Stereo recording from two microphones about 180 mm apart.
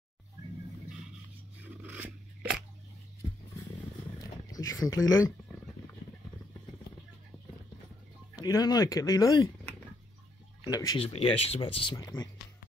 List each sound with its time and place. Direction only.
1.6 s scissors: 10° right (ahead or behind)
4.2 s a sound: 20° left (ahead or behind)
8.4 s speech: 20° left (ahead or behind)
11.1 s speech: 35° left (ahead or behind)